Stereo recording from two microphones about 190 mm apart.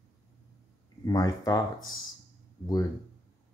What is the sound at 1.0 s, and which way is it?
Speech, 20° left (ahead or behind).